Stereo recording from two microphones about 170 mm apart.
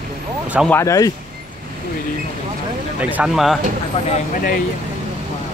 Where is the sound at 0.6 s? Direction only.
15° left (ahead or behind).